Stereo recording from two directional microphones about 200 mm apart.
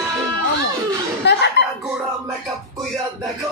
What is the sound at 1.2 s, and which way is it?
Chuckle, 60° left (ahead or behind).